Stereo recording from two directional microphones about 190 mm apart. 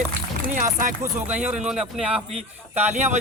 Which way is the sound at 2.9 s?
35° right (ahead or behind).